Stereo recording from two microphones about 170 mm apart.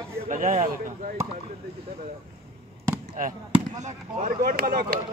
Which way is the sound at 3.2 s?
50° right (ahead or behind).